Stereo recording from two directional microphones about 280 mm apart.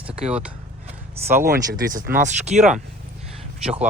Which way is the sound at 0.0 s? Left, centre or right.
Centre.